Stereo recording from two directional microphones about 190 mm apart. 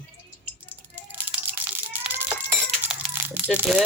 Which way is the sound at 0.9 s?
10° right (ahead or behind).